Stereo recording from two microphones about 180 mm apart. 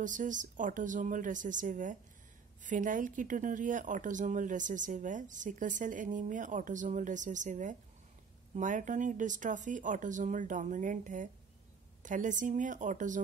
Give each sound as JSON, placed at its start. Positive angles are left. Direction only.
{"t": 0.0, "sound": "speech", "side_deg": -45}